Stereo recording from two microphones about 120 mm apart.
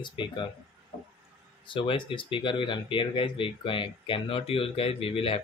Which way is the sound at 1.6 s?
45° left (ahead or behind).